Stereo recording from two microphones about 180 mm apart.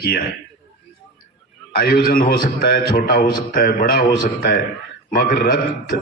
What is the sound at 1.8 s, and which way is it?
A man's voice, 60° left (ahead or behind).